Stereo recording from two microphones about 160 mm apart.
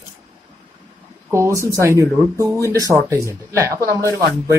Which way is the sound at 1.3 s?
15° right (ahead or behind).